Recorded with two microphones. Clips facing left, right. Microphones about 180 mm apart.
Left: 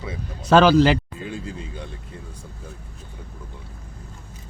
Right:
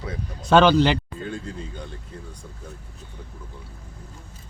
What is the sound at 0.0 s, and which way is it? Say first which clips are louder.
Speech: even; 5° left (ahead or behind).